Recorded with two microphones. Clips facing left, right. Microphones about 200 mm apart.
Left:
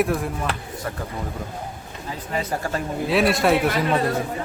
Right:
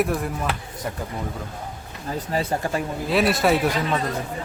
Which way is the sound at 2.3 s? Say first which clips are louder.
Right 1 dB; 30° right (ahead or behind).